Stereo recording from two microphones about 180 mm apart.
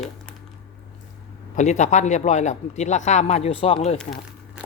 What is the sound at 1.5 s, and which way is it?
Speech, 40° left (ahead or behind).